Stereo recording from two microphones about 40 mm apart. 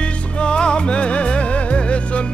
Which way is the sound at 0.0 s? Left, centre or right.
Left.